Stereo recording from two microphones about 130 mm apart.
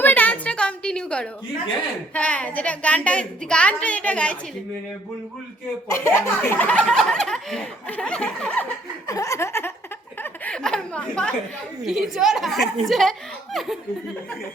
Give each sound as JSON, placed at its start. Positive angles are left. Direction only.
{"t": 0.0, "sound": "a sound", "side_deg": 15}
{"t": 2.1, "sound": "speech", "side_deg": 10}
{"t": 5.9, "sound": "speech", "side_deg": 20}
{"t": 9.0, "sound": "laughter", "side_deg": 25}
{"t": 10.2, "sound": "speech", "side_deg": 15}
{"t": 11.8, "sound": "speech", "side_deg": 0}